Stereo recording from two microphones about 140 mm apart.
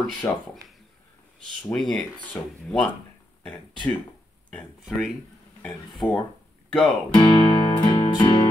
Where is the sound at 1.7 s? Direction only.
Centre (ahead or behind).